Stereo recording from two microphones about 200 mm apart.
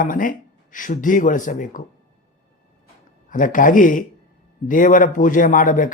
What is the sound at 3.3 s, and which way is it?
Speech, 40° left (ahead or behind).